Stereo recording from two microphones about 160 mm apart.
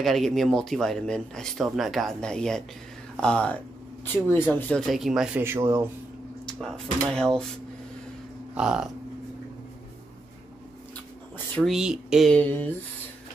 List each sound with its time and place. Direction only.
0.0 s speech: centre (ahead or behind)
5.4 s a man's voice: 15° right (ahead or behind)
7.1 s speech: 5° left (ahead or behind)
11.6 s speech: 5° right (ahead or behind)